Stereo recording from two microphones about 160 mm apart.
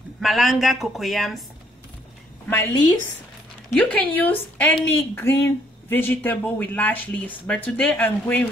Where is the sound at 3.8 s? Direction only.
10° left (ahead or behind).